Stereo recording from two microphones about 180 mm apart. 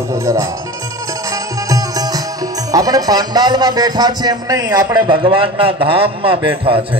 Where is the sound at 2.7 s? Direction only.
20° right (ahead or behind).